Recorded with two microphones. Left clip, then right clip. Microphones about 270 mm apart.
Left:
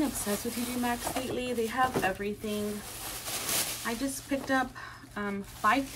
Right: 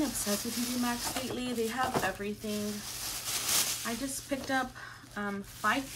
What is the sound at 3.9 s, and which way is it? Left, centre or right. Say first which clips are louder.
Speech: left 3 dB; centre.